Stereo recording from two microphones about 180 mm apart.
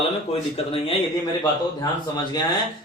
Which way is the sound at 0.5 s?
30° left (ahead or behind).